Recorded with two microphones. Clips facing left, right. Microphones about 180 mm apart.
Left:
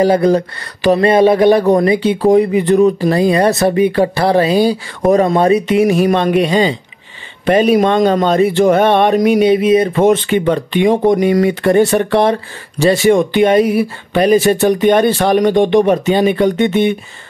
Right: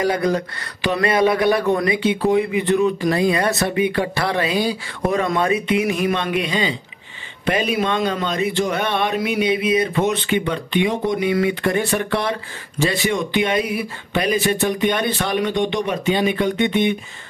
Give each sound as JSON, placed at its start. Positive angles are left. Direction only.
{"t": 0.0, "sound": "speech", "side_deg": 30}
{"t": 11.9, "sound": "speech", "side_deg": 30}
{"t": 12.8, "sound": "speech", "side_deg": 45}